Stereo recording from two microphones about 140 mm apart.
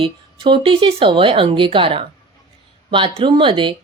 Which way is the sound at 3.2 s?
40° right (ahead or behind).